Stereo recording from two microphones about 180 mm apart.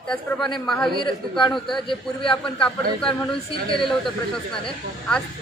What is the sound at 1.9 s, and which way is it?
Speech, 30° left (ahead or behind).